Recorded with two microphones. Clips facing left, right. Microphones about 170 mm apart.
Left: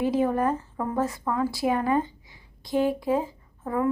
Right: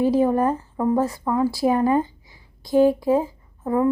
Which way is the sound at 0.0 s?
35° right (ahead or behind).